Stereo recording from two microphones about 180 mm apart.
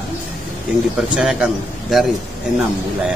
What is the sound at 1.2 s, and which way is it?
Speech, 5° right (ahead or behind).